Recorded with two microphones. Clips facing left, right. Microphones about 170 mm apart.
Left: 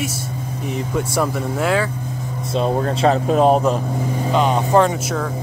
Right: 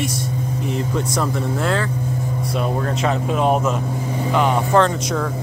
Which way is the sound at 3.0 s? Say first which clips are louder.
Left 5 dB; 35° left (ahead or behind).